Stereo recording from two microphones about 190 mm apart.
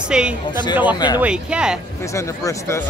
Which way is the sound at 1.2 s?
5° right (ahead or behind).